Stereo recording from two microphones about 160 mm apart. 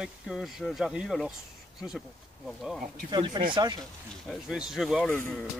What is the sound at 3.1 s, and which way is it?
Speech, 30° right (ahead or behind).